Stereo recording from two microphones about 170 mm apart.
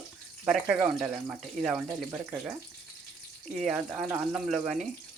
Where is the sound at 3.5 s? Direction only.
5° right (ahead or behind).